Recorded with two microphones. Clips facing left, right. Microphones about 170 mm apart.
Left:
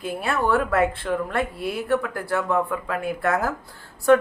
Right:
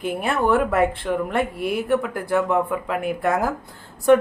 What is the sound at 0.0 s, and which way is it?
Speech, 20° right (ahead or behind).